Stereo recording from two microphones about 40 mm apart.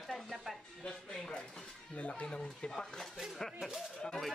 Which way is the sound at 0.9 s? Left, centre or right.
Centre.